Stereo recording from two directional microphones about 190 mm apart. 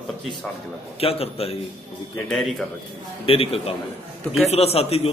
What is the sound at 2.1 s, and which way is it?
Speech, centre (ahead or behind).